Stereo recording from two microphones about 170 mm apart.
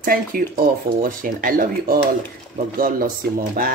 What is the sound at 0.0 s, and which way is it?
Speech, 60° right (ahead or behind).